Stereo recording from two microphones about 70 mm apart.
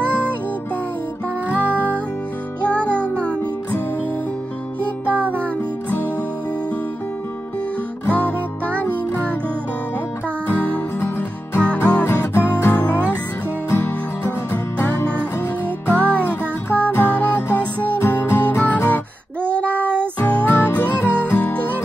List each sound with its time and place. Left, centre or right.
2.7 s music: centre
5.1 s music: left
8.1 s music: left
10.5 s music: left
11.6 s music: centre
20.2 s music: left